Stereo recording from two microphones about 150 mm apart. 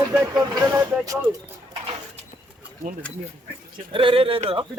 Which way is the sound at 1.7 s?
35° right (ahead or behind).